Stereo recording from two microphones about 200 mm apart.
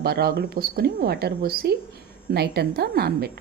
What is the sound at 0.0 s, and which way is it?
A woman's voice, 50° right (ahead or behind).